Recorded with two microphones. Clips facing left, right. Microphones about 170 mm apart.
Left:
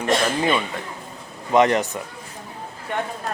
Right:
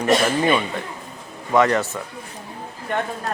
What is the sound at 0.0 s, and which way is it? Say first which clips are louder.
Speech: right 3 dB; 10° right (ahead or behind).